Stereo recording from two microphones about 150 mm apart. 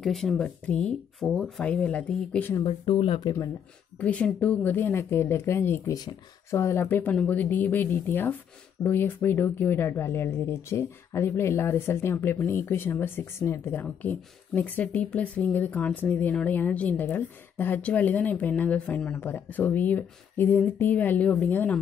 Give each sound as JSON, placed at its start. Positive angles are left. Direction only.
{"t": 0.0, "sound": "speech", "side_deg": 0}
{"t": 2.5, "sound": "speech", "side_deg": 35}
{"t": 4.0, "sound": "speech", "side_deg": 10}